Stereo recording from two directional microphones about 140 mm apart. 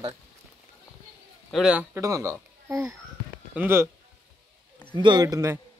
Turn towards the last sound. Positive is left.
turn(degrees=-20)  # may be behind; listen again after turning